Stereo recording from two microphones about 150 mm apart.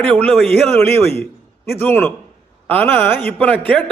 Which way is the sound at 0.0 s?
10° left (ahead or behind).